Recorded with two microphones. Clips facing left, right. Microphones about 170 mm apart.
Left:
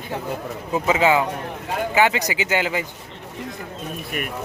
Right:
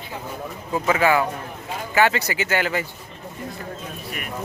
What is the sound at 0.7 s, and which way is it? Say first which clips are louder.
A man's voice: left 1 dB; 20° left (ahead or behind).